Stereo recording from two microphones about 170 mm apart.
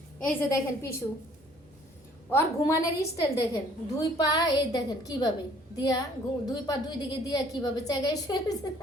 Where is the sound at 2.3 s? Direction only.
15° left (ahead or behind).